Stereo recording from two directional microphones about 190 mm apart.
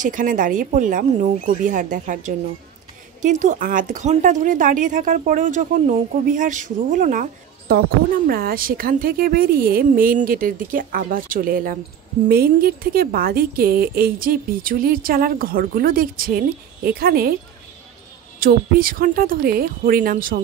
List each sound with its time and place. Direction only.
0.0 s a woman's voice: 45° right (ahead or behind)
18.4 s a woman's voice: 50° right (ahead or behind)